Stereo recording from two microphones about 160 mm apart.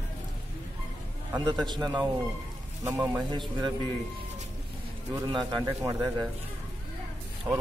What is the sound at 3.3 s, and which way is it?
Speech, 30° right (ahead or behind).